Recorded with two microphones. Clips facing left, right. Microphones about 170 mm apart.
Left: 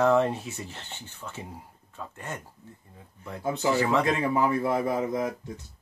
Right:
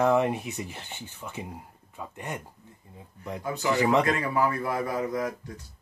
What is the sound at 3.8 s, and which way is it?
Speech, 15° right (ahead or behind).